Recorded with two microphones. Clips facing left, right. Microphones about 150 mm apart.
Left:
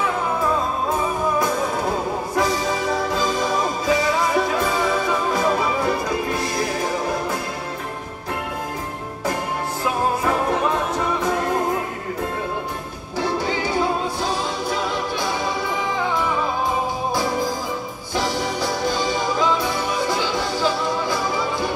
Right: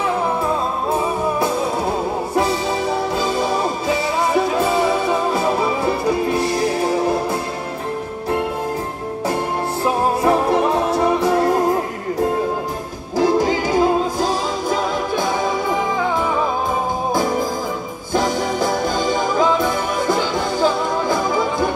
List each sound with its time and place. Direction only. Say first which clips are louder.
9.8 s music: right 4 dB; 35° right (ahead or behind)
13.1 s music: right 7 dB; 40° right (ahead or behind)
18.1 s music: right 4 dB; 50° right (ahead or behind)